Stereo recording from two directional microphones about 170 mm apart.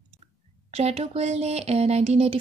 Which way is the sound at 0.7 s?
35° right (ahead or behind).